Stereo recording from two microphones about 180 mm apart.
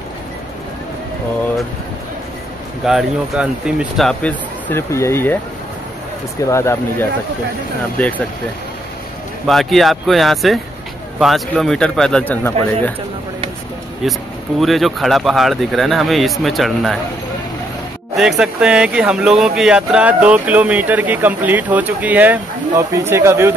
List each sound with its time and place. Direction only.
2.8 s speech: 5° right (ahead or behind)
6.5 s speech: 15° left (ahead or behind)
9.5 s speech: centre (ahead or behind)
14.0 s speech: centre (ahead or behind)
18.1 s speech: centre (ahead or behind)